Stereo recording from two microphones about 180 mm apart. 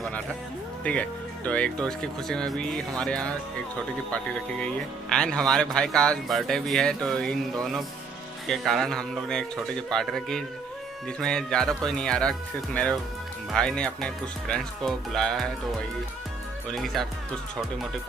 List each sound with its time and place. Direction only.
0.8 s speech: 5° left (ahead or behind)
16.7 s speech: centre (ahead or behind)